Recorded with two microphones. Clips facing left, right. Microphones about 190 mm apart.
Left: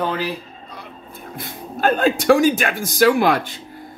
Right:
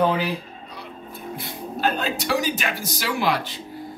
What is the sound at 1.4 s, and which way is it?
Speech, 50° left (ahead or behind).